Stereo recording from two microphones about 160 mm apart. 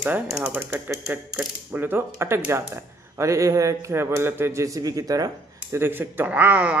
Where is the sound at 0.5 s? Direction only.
15° right (ahead or behind).